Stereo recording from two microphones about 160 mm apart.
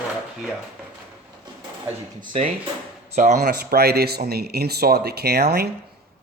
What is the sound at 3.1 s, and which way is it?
Speech, 50° right (ahead or behind).